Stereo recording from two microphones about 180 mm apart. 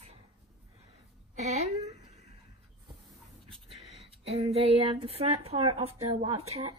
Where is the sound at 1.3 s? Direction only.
35° right (ahead or behind).